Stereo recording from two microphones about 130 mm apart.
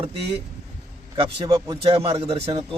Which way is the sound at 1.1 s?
40° right (ahead or behind).